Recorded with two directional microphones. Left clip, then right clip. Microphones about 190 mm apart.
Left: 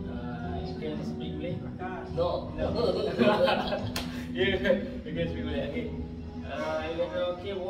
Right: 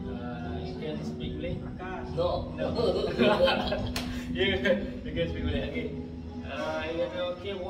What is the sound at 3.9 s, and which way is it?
Music, 15° left (ahead or behind).